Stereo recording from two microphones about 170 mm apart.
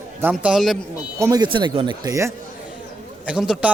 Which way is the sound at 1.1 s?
20° right (ahead or behind).